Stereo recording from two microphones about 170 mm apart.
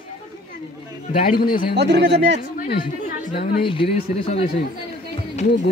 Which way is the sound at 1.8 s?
85° right.